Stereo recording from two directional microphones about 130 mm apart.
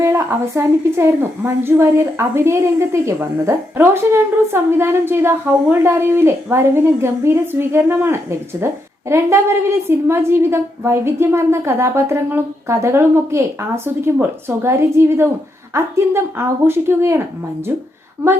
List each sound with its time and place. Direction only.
0.0 s a woman's voice: 20° right (ahead or behind)